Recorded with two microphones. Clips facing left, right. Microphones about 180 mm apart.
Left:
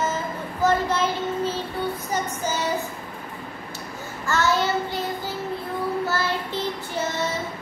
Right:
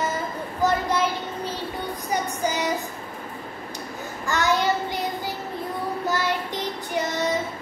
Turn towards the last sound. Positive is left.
turn(degrees=-15)  # may be behind; listen again after turning